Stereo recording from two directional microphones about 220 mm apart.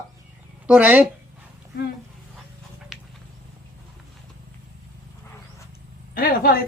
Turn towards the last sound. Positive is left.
turn(degrees=40)  # may be behind; listen again after turning